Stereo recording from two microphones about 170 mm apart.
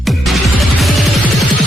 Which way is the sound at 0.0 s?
Centre (ahead or behind).